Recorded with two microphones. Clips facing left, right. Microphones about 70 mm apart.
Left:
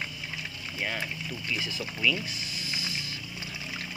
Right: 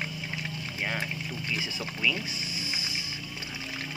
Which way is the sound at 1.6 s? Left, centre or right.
Centre.